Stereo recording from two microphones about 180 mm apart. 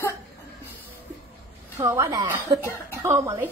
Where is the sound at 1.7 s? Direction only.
15° right (ahead or behind).